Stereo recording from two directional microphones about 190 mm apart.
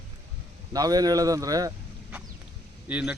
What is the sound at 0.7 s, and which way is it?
Speech, 20° right (ahead or behind).